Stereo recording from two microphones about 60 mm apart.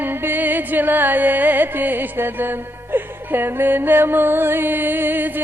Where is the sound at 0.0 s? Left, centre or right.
Right.